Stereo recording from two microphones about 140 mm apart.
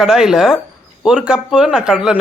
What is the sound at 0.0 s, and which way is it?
Speech, 5° right (ahead or behind).